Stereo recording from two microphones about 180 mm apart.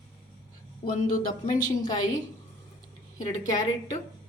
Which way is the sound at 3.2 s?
20° left (ahead or behind).